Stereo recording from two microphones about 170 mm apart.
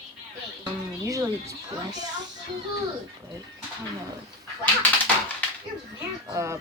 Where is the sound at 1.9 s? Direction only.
45° right (ahead or behind).